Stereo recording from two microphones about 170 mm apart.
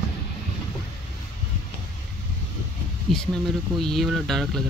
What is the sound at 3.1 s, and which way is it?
Speech, 5° left (ahead or behind).